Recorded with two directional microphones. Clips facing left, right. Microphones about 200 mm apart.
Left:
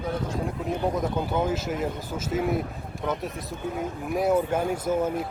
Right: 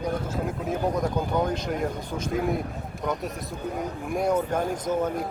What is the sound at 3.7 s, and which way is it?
Speech, centre (ahead or behind).